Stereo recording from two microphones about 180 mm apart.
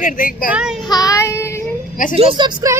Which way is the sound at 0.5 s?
5° right (ahead or behind).